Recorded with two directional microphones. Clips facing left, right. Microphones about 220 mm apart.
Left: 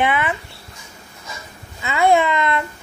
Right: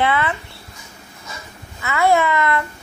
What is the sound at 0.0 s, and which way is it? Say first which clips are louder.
Speech: even; 15° left (ahead or behind).